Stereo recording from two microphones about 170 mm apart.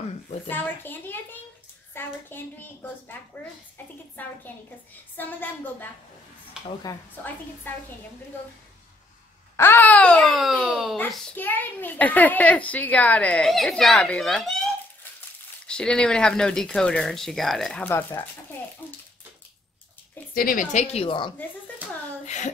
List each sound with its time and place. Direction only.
0.5 s a child's voice: 10° left (ahead or behind)
4.2 s a child's voice: 10° left (ahead or behind)
6.5 s a sound: 5° right (ahead or behind)
9.6 s a child's voice: 10° left (ahead or behind); by 11.0 s 5° right (ahead or behind)
11.0 s a child's voice: 10° left (ahead or behind)
15.6 s speech: 5° left (ahead or behind)
20.3 s a woman's voice: 50° left (ahead or behind); by 21.4 s 30° left (ahead or behind)
21.8 s speech: 10° right (ahead or behind)
22.2 s speech: 45° left (ahead or behind)